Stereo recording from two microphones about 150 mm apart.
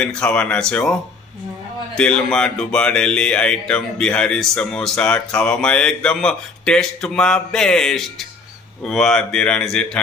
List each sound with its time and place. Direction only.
0.0 s speech: 5° left (ahead or behind)
2.0 s speech: 5° left (ahead or behind)